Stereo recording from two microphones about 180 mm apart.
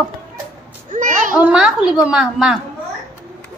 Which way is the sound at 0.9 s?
45° right (ahead or behind).